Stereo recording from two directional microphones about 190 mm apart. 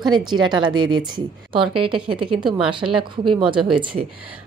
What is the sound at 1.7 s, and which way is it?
A woman's voice, 25° right (ahead or behind).